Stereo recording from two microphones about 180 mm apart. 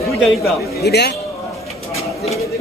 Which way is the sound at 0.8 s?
65° left (ahead or behind).